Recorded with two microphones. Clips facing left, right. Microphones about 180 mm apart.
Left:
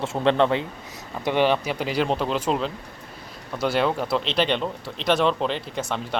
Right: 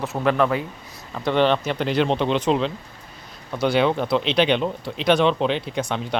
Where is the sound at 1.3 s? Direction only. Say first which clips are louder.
Right 2 dB; 10° left (ahead or behind).